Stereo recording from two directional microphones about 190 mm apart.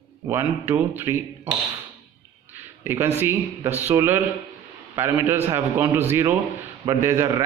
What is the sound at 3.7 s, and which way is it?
Speech, 35° right (ahead or behind).